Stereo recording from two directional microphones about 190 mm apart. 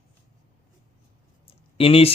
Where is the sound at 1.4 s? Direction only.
30° left (ahead or behind).